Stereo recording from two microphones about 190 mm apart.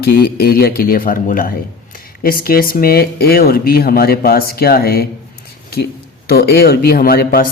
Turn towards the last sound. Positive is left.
turn(degrees=50)  # may be behind; listen again after turning